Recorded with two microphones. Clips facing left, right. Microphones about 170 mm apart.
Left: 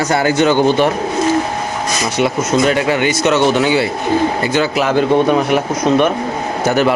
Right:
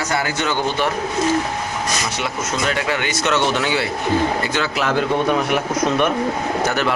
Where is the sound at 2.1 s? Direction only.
20° left (ahead or behind).